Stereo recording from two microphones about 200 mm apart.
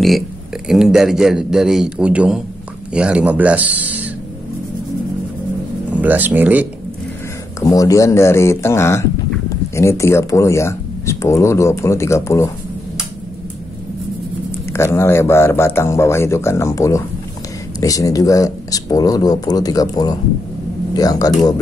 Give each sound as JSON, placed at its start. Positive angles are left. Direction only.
{"t": 0.7, "sound": "a man's voice", "side_deg": 0}
{"t": 5.9, "sound": "speech", "side_deg": -10}
{"t": 7.6, "sound": "speech", "side_deg": 15}
{"t": 14.7, "sound": "speech", "side_deg": 15}